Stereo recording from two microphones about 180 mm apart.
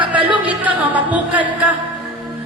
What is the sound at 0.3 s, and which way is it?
Music, 10° right (ahead or behind).